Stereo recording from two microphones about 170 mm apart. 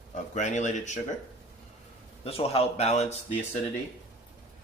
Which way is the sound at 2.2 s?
35° left (ahead or behind).